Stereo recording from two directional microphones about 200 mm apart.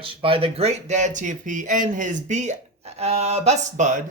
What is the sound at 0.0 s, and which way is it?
Speech, 25° right (ahead or behind).